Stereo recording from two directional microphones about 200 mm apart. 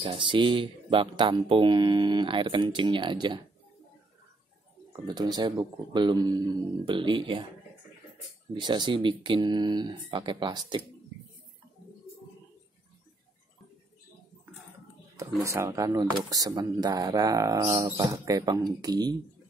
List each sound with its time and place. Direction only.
0.0 s speech: 25° right (ahead or behind)
5.0 s speech: 20° right (ahead or behind)
8.5 s speech: 20° right (ahead or behind)
15.4 s speech: 15° right (ahead or behind)